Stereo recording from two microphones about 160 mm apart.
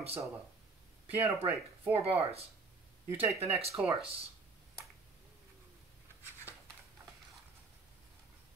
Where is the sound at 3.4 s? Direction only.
40° right (ahead or behind).